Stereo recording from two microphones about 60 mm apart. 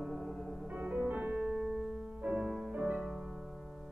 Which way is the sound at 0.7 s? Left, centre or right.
Right.